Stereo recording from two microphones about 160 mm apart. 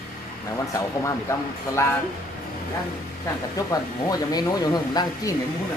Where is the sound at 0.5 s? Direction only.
20° left (ahead or behind).